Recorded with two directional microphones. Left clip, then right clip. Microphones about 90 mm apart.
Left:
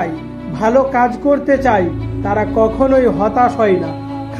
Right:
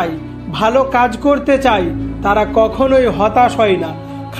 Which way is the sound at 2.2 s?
40° right (ahead or behind).